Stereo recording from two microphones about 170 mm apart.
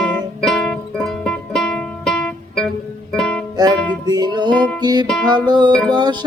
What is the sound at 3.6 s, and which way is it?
Music, 25° right (ahead or behind).